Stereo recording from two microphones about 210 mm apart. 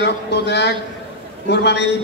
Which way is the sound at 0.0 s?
55° left (ahead or behind).